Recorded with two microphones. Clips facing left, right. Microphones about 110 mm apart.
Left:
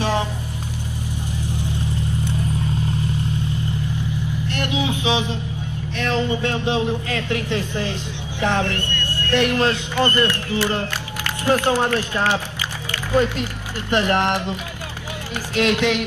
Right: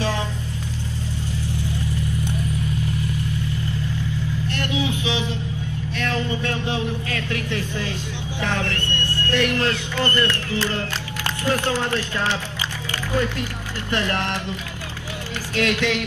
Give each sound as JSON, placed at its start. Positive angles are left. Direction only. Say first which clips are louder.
{"t": 1.5, "sound": "vehicle", "louder": "left 1 dB", "side_deg": 20}
{"t": 4.6, "sound": "a sound", "louder": "left 2 dB", "side_deg": 20}
{"t": 5.9, "sound": "speech", "louder": "left 4 dB", "side_deg": 20}
{"t": 13.1, "sound": "speech", "louder": "left 5 dB", "side_deg": 20}
{"t": 15.5, "sound": "speech", "louder": "left 3 dB", "side_deg": 20}